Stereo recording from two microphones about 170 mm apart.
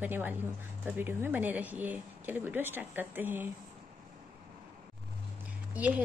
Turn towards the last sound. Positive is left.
turn(degrees=-10)  # may be behind; listen again after turning